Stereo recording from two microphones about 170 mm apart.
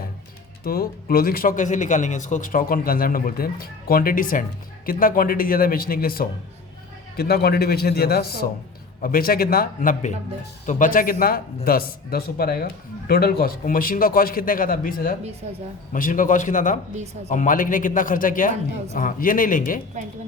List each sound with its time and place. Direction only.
0.6 s speech: 65° left (ahead or behind)
15.4 s speech: 40° right (ahead or behind)
15.9 s a man's voice: 50° left (ahead or behind)